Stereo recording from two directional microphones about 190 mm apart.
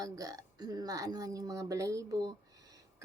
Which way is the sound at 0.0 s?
20° right (ahead or behind).